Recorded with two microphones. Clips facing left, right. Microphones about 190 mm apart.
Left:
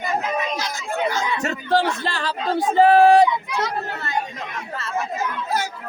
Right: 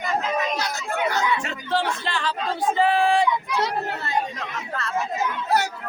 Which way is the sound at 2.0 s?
40° left (ahead or behind).